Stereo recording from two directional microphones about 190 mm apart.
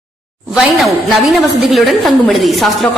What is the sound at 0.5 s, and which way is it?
A woman's voice, centre (ahead or behind).